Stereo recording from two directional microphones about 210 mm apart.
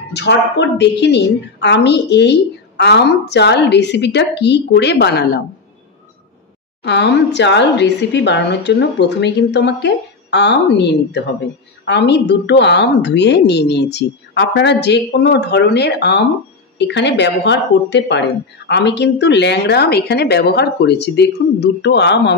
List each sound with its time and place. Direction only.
0.1 s a woman's voice: 55° left (ahead or behind)
6.8 s a woman's voice: 55° left (ahead or behind)